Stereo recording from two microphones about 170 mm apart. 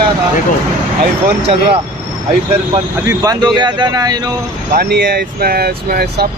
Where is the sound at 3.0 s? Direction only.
20° right (ahead or behind).